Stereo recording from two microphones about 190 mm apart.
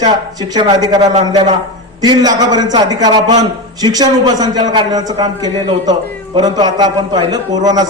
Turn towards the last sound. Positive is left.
turn(degrees=-20)  # may be behind; listen again after turning